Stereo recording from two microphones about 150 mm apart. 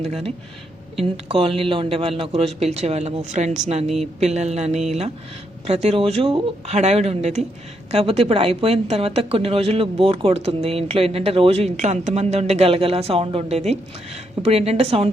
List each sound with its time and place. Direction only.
0.0 s a woman's voice: 45° right (ahead or behind)